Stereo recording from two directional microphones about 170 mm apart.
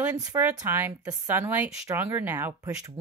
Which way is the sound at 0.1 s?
20° right (ahead or behind).